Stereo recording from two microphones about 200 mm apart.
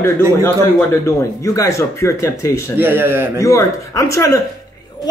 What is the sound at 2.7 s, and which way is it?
Speech, 10° right (ahead or behind).